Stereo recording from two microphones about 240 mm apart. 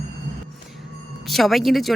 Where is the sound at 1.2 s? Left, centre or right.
Centre.